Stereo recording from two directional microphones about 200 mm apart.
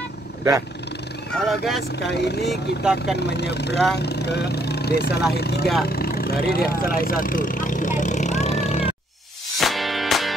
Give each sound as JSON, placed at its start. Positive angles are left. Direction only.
{"t": 0.4, "sound": "speech", "side_deg": -15}
{"t": 1.3, "sound": "speech", "side_deg": 0}
{"t": 2.0, "sound": "speech", "side_deg": 55}
{"t": 2.4, "sound": "speech", "side_deg": 0}
{"t": 3.2, "sound": "speech", "side_deg": 55}
{"t": 9.6, "sound": "music", "side_deg": 0}